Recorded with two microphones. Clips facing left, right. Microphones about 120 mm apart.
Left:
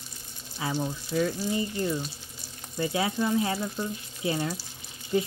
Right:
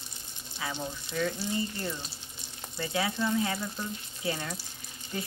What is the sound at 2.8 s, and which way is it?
Speech, 25° left (ahead or behind).